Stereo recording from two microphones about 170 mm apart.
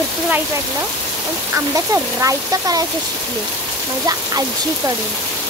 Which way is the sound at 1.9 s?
20° right (ahead or behind).